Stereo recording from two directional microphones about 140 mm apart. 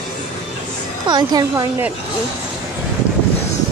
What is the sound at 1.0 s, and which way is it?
Speech, 30° right (ahead or behind).